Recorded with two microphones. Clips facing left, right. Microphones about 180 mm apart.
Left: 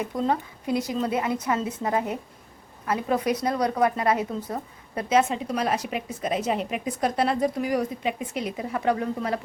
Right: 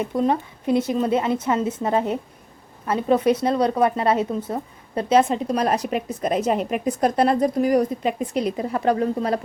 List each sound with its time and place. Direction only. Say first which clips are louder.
0.0 s a woman's voice: right 4 dB; 20° right (ahead or behind)